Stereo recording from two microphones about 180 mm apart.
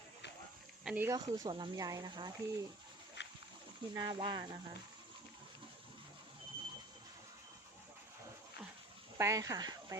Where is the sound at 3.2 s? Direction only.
75° left (ahead or behind).